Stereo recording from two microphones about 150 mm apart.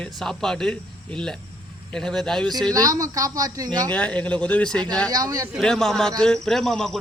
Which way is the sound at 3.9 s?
10° left (ahead or behind).